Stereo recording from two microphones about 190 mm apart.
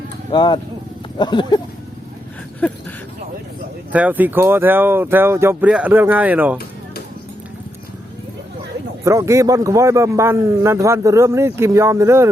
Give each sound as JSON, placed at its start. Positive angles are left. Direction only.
{"t": 0.3, "sound": "a sound", "side_deg": 25}
{"t": 2.6, "sound": "speech", "side_deg": 5}
{"t": 3.9, "sound": "a man's voice", "side_deg": -10}
{"t": 9.0, "sound": "a man's voice", "side_deg": -15}